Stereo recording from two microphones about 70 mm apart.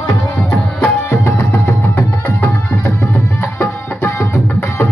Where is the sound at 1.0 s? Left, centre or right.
Left.